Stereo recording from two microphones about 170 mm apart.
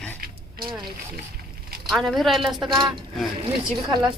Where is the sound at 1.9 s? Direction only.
Centre (ahead or behind).